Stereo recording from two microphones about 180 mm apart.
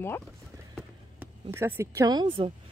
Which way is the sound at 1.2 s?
10° right (ahead or behind).